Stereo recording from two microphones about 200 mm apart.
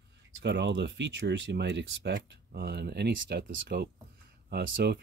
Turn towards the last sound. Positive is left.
turn(degrees=-55)  # may be behind; listen again after turning